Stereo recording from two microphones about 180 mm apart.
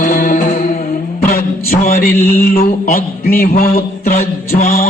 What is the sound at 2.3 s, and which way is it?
Mantra, 50° left (ahead or behind).